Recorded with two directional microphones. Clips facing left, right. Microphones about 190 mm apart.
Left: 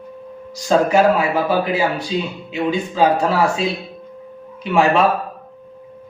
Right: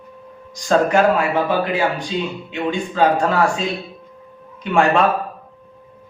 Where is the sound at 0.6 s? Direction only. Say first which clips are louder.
Left 1 dB; 10° left (ahead or behind).